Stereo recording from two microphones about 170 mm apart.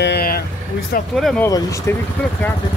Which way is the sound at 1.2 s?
Centre (ahead or behind).